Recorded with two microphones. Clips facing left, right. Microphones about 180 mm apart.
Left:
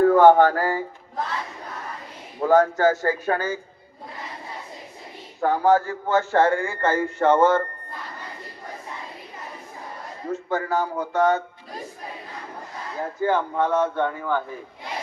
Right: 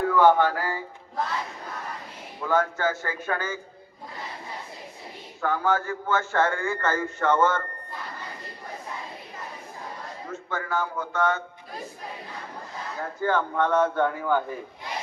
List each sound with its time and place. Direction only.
0.0 s a sound: 45° left (ahead or behind)
2.4 s a man's voice: 40° left (ahead or behind)
5.4 s a man's voice: 35° left (ahead or behind)
10.5 s a man's voice: 35° left (ahead or behind)
13.0 s speech: 20° left (ahead or behind)
13.6 s speech: 5° left (ahead or behind)